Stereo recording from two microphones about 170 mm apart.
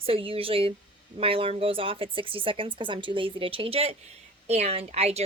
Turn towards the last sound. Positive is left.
turn(degrees=-40)  # may be behind; listen again after turning